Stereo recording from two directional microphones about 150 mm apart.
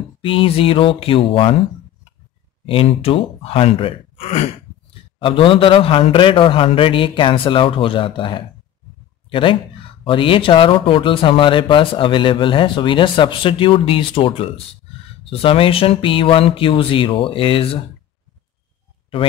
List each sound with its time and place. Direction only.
0.2 s speech: 35° left (ahead or behind)
2.6 s speech: 40° left (ahead or behind)